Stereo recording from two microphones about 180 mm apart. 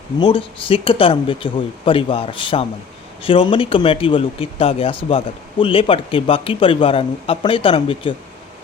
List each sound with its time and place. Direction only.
0.2 s speech: 30° left (ahead or behind)